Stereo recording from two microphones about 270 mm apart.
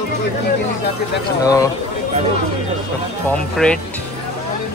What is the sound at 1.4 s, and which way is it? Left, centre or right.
Speech, centre.